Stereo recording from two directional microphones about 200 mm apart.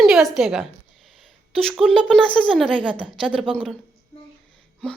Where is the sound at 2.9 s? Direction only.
25° right (ahead or behind).